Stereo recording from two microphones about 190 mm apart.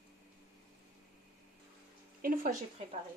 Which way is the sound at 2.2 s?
45° right (ahead or behind).